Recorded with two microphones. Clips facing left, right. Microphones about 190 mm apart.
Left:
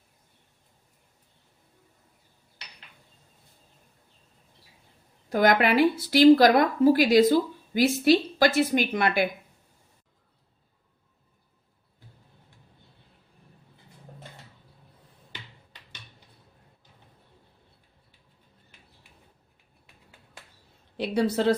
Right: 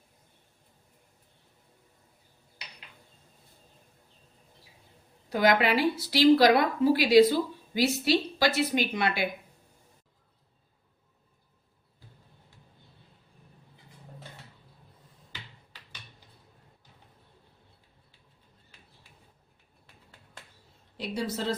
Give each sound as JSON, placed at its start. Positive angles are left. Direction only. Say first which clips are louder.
{"t": 5.3, "sound": "a woman's voice", "louder": "left 3 dB", "side_deg": 50}
{"t": 21.0, "sound": "a woman's voice", "louder": "left 8 dB", "side_deg": 65}